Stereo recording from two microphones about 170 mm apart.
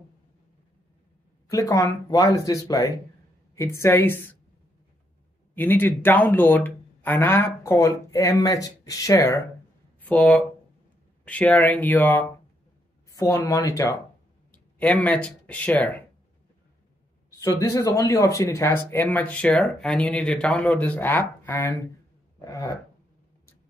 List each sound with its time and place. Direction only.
1.5 s speech: 20° left (ahead or behind)
5.5 s speech: 10° left (ahead or behind)
10.0 s speech: 5° left (ahead or behind)
14.8 s speech: 10° left (ahead or behind)
17.4 s speech: 20° left (ahead or behind)